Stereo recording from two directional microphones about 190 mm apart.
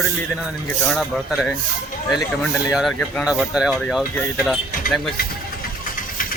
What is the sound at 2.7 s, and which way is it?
Speech, centre (ahead or behind).